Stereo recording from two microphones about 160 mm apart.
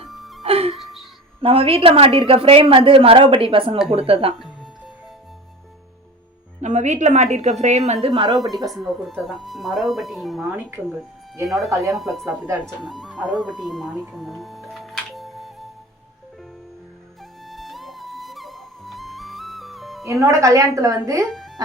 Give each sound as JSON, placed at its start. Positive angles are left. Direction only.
{"t": 0.1, "sound": "music", "side_deg": 0}
{"t": 0.4, "sound": "music", "side_deg": -35}
{"t": 1.4, "sound": "a woman's voice", "side_deg": -35}
{"t": 6.6, "sound": "a woman's voice", "side_deg": -45}
{"t": 8.0, "sound": "a woman's voice", "side_deg": -30}
{"t": 8.7, "sound": "speech", "side_deg": 0}
{"t": 11.7, "sound": "a woman's voice", "side_deg": -20}
{"t": 11.9, "sound": "speech", "side_deg": 0}
{"t": 14.1, "sound": "music", "side_deg": 0}
{"t": 17.5, "sound": "music", "side_deg": 0}
{"t": 20.1, "sound": "a woman's voice", "side_deg": -20}
{"t": 21.2, "sound": "speech", "side_deg": 0}